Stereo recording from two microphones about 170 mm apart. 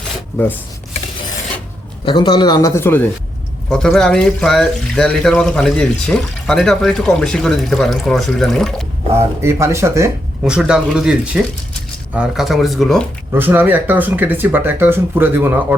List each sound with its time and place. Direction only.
2.0 s speech: 25° left (ahead or behind); by 8.7 s centre (ahead or behind)
9.1 s speech: 15° right (ahead or behind)
10.4 s speech: 5° right (ahead or behind)
13.3 s speech: 10° right (ahead or behind)